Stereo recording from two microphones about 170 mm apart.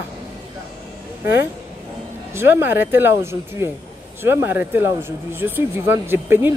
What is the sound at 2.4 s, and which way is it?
Speech, 15° right (ahead or behind).